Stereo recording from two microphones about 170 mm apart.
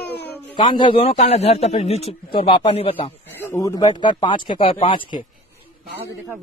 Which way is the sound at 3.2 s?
15° left (ahead or behind).